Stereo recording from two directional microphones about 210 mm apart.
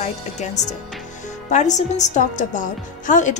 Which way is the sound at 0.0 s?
35° left (ahead or behind).